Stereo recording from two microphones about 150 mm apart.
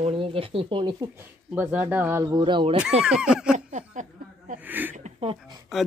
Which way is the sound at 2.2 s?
30° right (ahead or behind).